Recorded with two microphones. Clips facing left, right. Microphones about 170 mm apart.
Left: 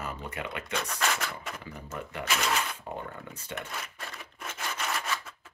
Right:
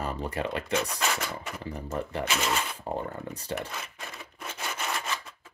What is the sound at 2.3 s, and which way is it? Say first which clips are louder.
Speech: left 1 dB; 5° right (ahead or behind).